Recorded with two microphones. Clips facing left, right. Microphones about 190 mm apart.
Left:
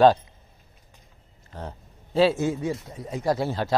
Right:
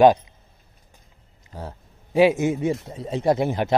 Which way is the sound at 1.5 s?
10° right (ahead or behind).